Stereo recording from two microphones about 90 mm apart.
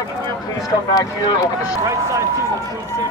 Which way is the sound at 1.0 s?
50° left (ahead or behind).